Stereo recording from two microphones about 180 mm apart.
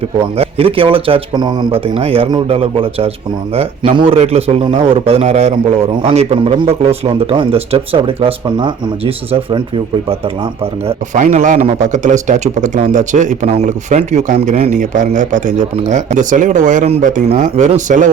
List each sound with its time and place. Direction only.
0.3 s speech: 30° right (ahead or behind)
10.6 s speech: 35° right (ahead or behind)
11.2 s speech: 45° right (ahead or behind)